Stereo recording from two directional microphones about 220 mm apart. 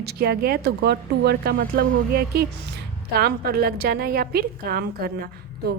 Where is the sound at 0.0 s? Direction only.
45° right (ahead or behind).